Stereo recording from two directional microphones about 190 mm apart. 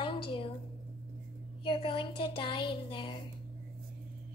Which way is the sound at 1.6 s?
25° left (ahead or behind).